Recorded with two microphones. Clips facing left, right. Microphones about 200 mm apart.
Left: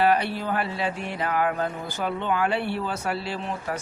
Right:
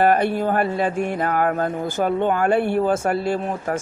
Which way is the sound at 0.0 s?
50° right (ahead or behind).